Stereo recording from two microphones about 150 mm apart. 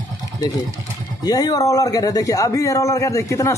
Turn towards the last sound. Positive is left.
turn(degrees=20)  # may be behind; listen again after turning